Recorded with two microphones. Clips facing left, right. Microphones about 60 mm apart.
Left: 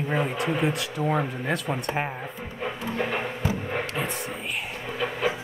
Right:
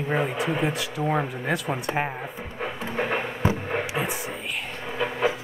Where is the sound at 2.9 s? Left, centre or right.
Right.